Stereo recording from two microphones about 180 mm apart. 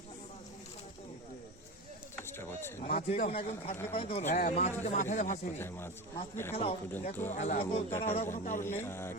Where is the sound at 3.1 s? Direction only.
35° left (ahead or behind).